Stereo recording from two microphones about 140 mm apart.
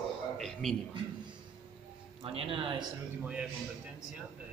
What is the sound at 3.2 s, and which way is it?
Speech, 10° right (ahead or behind).